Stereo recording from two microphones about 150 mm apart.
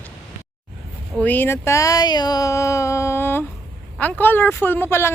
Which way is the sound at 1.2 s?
10° left (ahead or behind).